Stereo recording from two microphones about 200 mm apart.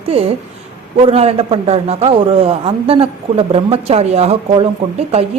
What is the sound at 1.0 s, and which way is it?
A man's voice, 30° right (ahead or behind).